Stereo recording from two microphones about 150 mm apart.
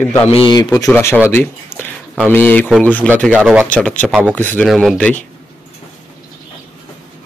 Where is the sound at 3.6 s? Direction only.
10° left (ahead or behind).